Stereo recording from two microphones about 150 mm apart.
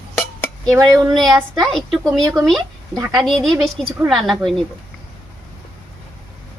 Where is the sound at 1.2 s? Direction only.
Centre (ahead or behind).